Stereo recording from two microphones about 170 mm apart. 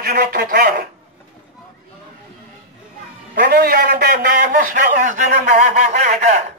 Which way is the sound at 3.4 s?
60° right (ahead or behind).